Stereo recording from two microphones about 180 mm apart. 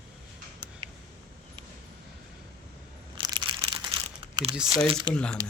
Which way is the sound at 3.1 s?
25° right (ahead or behind).